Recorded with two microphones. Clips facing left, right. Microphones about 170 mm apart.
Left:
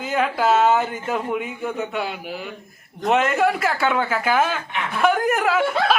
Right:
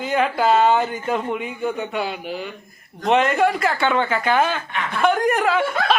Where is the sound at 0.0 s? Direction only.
Centre (ahead or behind).